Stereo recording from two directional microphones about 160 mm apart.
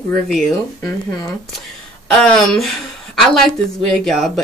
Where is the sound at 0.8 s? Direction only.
20° left (ahead or behind).